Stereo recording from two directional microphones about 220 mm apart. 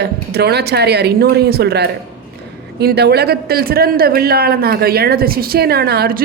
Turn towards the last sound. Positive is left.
turn(degrees=-45)  # may be behind; listen again after turning